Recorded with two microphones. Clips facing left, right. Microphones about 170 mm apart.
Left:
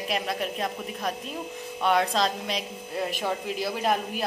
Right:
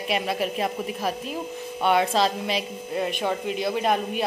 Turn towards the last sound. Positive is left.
turn(degrees=0)  # may be behind; listen again after turning